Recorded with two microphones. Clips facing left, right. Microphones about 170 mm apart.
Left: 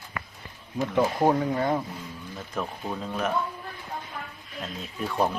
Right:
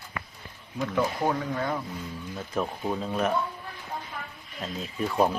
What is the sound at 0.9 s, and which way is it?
Speech, 30° left (ahead or behind).